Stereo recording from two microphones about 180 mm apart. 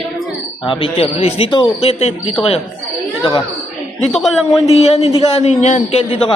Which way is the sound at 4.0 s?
Centre (ahead or behind).